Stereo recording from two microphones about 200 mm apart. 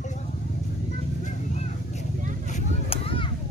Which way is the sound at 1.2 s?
35° left (ahead or behind).